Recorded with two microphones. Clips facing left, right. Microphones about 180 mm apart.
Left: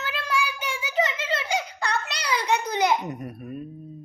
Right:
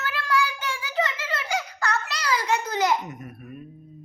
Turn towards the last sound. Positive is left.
turn(degrees=35)  # may be behind; listen again after turning